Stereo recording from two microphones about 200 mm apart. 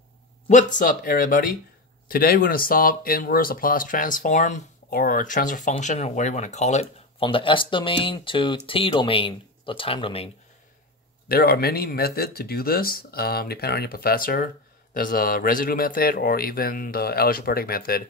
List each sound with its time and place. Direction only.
0.5 s speech: 40° left (ahead or behind)
11.2 s speech: 50° left (ahead or behind)